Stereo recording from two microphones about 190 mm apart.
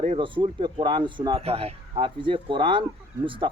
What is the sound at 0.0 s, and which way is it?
Speech, 30° right (ahead or behind).